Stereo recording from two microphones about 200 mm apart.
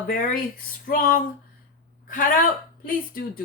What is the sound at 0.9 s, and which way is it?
A woman's voice, 45° left (ahead or behind).